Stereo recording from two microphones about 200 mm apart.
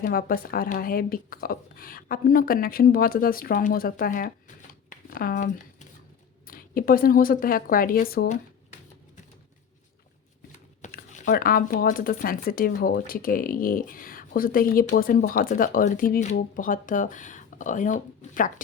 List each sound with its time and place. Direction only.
0.0 s speech: 45° left (ahead or behind)
4.9 s a sound: 45° left (ahead or behind)
6.5 s speech: 45° left (ahead or behind)
10.8 s speech: 35° left (ahead or behind)